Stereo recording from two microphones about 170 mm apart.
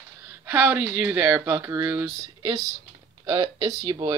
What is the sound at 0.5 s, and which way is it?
Speech, 10° right (ahead or behind).